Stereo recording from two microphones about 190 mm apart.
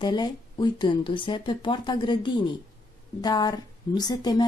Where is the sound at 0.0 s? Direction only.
20° left (ahead or behind).